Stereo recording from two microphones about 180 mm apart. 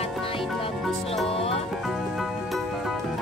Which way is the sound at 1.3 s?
30° left (ahead or behind).